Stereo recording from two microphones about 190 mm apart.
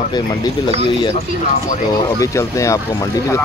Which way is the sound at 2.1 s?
15° left (ahead or behind).